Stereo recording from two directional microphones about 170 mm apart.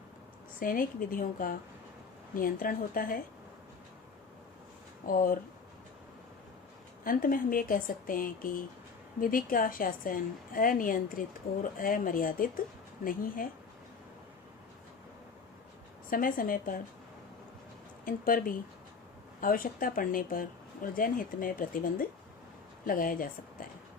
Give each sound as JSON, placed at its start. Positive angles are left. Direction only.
{"t": 0.6, "sound": "a woman's voice", "side_deg": 55}
{"t": 5.0, "sound": "a woman's voice", "side_deg": 55}
{"t": 7.0, "sound": "a woman's voice", "side_deg": 55}
{"t": 16.0, "sound": "a woman's voice", "side_deg": 55}
{"t": 18.0, "sound": "a woman's voice", "side_deg": 55}